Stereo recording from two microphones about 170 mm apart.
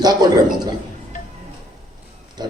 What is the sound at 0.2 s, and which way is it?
Speech, 25° right (ahead or behind).